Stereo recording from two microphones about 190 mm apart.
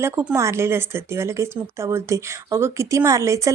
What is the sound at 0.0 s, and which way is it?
Speech, 15° right (ahead or behind).